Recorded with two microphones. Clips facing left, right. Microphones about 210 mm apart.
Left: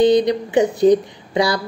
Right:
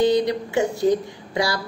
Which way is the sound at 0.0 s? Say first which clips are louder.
Left 5 dB; 20° left (ahead or behind).